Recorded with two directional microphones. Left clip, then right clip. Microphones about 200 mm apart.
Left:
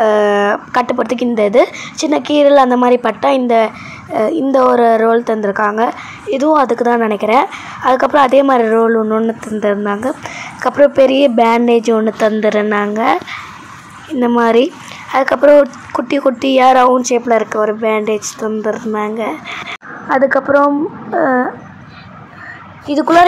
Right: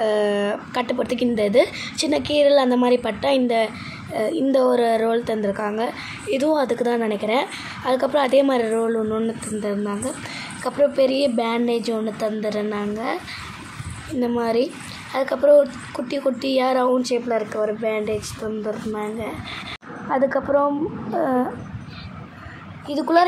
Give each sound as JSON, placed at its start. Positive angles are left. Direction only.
{"t": 0.0, "sound": "a woman's voice", "side_deg": 10}
{"t": 12.2, "sound": "a woman's voice", "side_deg": 25}
{"t": 14.3, "sound": "a woman's voice", "side_deg": 20}
{"t": 22.8, "sound": "a woman's voice", "side_deg": 15}